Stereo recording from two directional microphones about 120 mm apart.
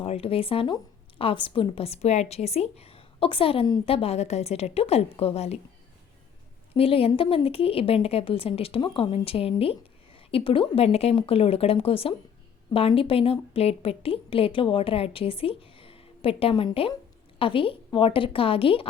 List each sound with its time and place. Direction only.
0.0 s a woman's voice: 55° left (ahead or behind)
6.7 s a woman's voice: 50° left (ahead or behind)